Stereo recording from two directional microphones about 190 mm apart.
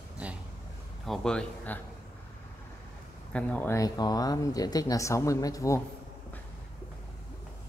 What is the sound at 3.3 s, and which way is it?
Speech, 5° left (ahead or behind).